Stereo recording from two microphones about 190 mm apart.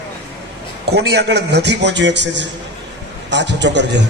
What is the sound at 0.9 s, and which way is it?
A man's voice, 60° right (ahead or behind).